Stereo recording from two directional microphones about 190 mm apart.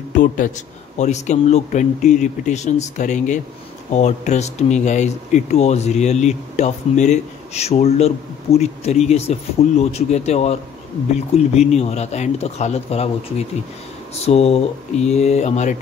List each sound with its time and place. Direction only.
0.9 s speech: 40° left (ahead or behind)